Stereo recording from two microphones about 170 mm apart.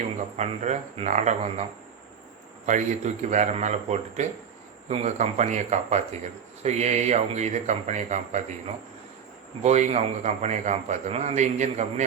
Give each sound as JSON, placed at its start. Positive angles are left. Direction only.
{"t": 0.3, "sound": "a man's voice", "side_deg": -40}
{"t": 2.6, "sound": "a man's voice", "side_deg": -45}